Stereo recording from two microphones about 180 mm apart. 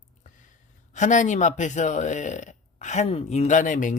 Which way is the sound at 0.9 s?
45° left (ahead or behind).